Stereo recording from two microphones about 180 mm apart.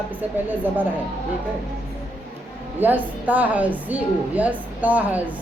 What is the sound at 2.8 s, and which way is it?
A woman's voice, 10° right (ahead or behind).